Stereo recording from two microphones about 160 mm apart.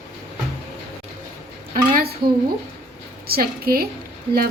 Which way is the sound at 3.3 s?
70° right (ahead or behind).